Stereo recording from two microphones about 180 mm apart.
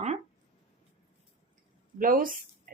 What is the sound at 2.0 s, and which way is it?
Speech, 50° right (ahead or behind).